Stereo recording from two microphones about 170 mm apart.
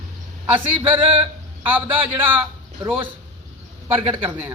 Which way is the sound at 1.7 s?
10° right (ahead or behind).